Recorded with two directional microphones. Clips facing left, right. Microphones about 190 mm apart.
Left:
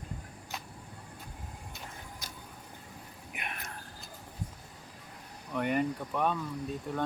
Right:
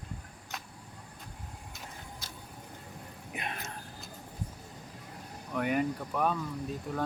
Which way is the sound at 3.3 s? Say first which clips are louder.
Right 4 dB; 30° right (ahead or behind).